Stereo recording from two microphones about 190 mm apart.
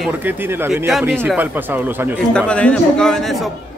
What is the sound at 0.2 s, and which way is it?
Speech, 10° right (ahead or behind).